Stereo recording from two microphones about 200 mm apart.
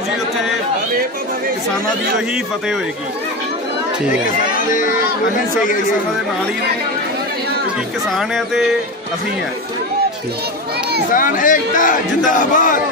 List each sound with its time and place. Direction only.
8.1 s speech: centre (ahead or behind)
11.1 s a man's voice: 40° left (ahead or behind)